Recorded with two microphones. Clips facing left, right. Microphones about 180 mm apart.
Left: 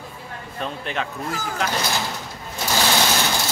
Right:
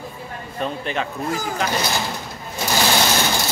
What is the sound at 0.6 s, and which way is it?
Speech, centre (ahead or behind).